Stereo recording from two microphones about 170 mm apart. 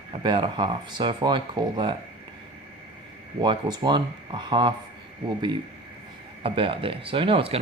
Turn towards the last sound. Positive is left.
turn(degrees=-30)  # may be behind; listen again after turning